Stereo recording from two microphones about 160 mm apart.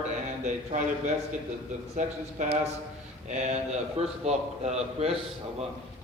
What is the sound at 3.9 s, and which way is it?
A man's voice, 45° right (ahead or behind).